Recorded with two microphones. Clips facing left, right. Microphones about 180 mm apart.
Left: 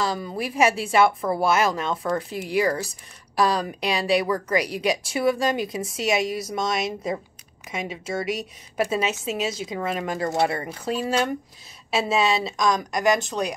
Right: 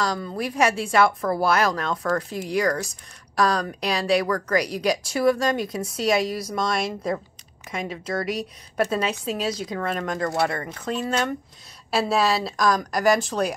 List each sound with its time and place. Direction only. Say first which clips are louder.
0.0 s a woman's voice: even; 5° left (ahead or behind)
10.2 s speech: left 1 dB; 25° left (ahead or behind)
10.8 s a woman's voice: left 1 dB; 10° left (ahead or behind)